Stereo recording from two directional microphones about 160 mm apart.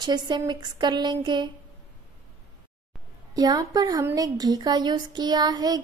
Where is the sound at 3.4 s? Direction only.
25° right (ahead or behind).